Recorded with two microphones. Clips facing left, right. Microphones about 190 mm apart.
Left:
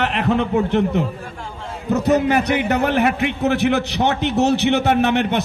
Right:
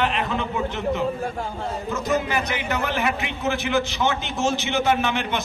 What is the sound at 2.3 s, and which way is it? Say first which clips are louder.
A man's voice: left 8 dB; 65° left (ahead or behind).